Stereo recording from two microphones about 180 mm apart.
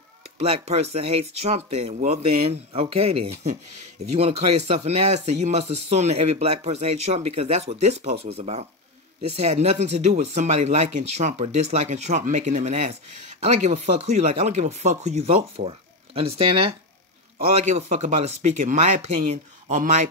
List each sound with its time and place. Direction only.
0.4 s speech: 35° right (ahead or behind)